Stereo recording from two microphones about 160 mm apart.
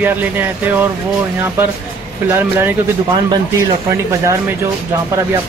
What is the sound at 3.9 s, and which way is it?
Speech, 20° right (ahead or behind).